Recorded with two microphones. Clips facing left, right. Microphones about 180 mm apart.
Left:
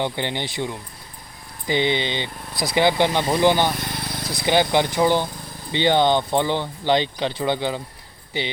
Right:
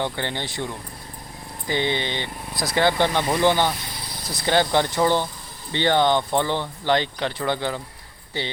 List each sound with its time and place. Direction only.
0.0 s speech: 20° left (ahead or behind)
3.8 s vehicle: 60° left (ahead or behind)
4.4 s speech: 15° left (ahead or behind)